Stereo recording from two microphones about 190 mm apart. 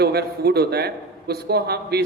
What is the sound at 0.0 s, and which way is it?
A man's voice, 55° right (ahead or behind).